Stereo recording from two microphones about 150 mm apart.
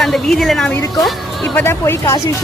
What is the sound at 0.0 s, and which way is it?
Speech, centre (ahead or behind).